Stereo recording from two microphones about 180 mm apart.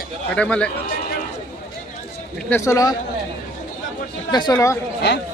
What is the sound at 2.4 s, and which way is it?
Speech, 15° left (ahead or behind).